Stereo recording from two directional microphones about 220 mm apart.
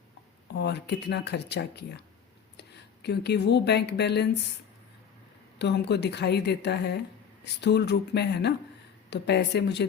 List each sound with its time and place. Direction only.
0.5 s speech: 50° left (ahead or behind)
5.5 s speech: 50° left (ahead or behind)